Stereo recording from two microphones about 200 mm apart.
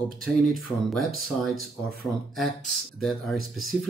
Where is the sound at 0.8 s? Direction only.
Centre (ahead or behind).